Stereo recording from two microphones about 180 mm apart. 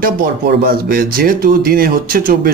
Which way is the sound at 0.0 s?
55° right (ahead or behind).